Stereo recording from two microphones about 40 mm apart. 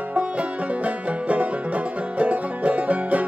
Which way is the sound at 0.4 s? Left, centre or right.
Right.